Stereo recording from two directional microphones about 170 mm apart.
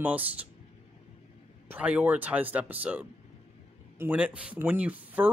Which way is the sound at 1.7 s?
10° right (ahead or behind).